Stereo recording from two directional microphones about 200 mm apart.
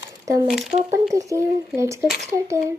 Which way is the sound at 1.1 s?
15° right (ahead or behind).